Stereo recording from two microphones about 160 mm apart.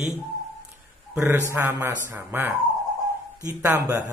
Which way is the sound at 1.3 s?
15° right (ahead or behind).